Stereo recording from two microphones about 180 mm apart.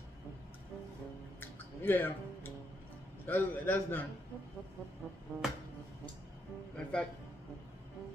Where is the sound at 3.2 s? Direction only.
10° left (ahead or behind).